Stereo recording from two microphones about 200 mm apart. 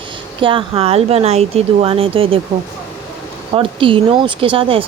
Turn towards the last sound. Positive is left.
turn(degrees=-25)  # may be behind; listen again after turning